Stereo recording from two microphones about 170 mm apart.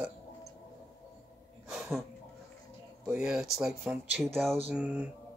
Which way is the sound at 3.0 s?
5° right (ahead or behind).